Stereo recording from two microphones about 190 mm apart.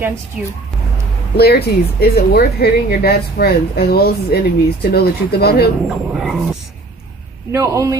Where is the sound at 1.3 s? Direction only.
55° left (ahead or behind).